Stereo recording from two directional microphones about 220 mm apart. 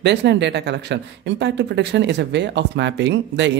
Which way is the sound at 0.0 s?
50° right (ahead or behind).